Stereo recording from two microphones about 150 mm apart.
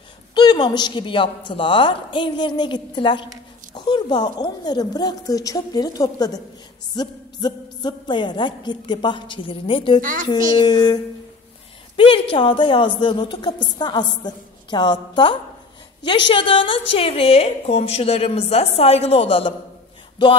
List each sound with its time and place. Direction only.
0.3 s a woman's voice: 30° left (ahead or behind)
12.0 s a woman's voice: 35° left (ahead or behind)